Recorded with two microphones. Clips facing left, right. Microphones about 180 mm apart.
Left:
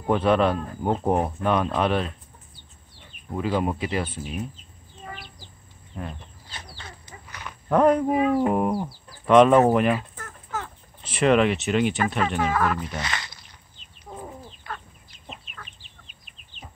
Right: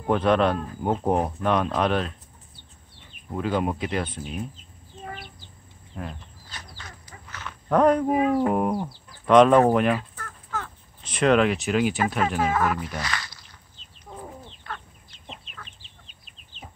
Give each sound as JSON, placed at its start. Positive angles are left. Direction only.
{"t": 0.0, "sound": "speech", "side_deg": 5}
{"t": 3.3, "sound": "speech", "side_deg": 5}
{"t": 6.5, "sound": "bird", "side_deg": 25}
{"t": 7.2, "sound": "a sound", "side_deg": 15}
{"t": 8.5, "sound": "speech", "side_deg": 0}
{"t": 9.9, "sound": "fowl", "side_deg": 20}
{"t": 11.1, "sound": "speech", "side_deg": 5}
{"t": 13.0, "sound": "a sound", "side_deg": 20}
{"t": 14.1, "sound": "chicken", "side_deg": 15}
{"t": 15.8, "sound": "chicken", "side_deg": -30}